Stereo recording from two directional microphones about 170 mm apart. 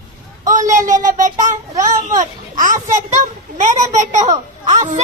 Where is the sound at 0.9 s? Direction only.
50° right (ahead or behind).